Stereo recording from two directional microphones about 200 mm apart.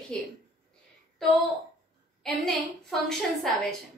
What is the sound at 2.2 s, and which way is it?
A woman's voice, centre (ahead or behind).